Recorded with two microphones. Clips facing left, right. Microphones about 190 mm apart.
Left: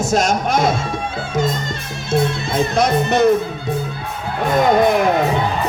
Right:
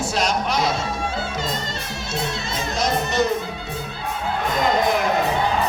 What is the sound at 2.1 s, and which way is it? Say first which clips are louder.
Speech: left 10 dB; 55° left (ahead or behind).